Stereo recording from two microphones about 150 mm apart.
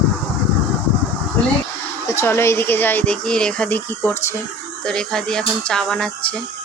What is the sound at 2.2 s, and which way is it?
Speech, 15° left (ahead or behind).